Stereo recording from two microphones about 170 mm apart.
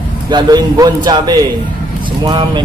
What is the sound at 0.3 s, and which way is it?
A man's voice, 25° right (ahead or behind).